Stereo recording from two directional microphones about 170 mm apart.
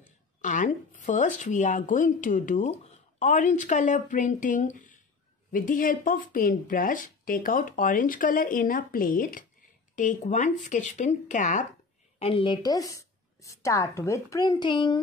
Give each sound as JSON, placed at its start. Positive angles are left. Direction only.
{"t": 0.4, "sound": "speech", "side_deg": 50}
{"t": 12.2, "sound": "speech", "side_deg": 30}